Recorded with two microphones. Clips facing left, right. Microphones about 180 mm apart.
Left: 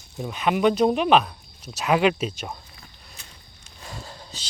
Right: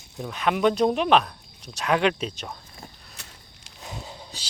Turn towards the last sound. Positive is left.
turn(degrees=-20)  # may be behind; listen again after turning